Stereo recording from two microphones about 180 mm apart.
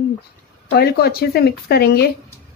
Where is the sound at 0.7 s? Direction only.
60° left (ahead or behind).